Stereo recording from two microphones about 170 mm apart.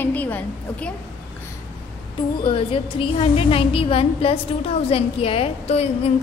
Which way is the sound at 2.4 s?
30° left (ahead or behind).